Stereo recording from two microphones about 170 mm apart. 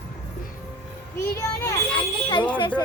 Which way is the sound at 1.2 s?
15° left (ahead or behind).